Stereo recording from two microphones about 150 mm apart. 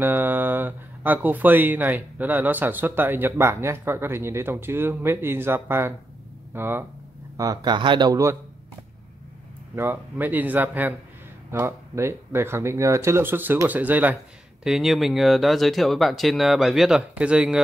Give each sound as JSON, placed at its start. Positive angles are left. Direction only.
{"t": 0.0, "sound": "speech", "side_deg": -15}
{"t": 7.3, "sound": "speech", "side_deg": -25}
{"t": 9.8, "sound": "speech", "side_deg": -15}